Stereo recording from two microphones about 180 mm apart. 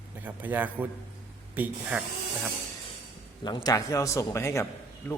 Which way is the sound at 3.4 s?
25° left (ahead or behind).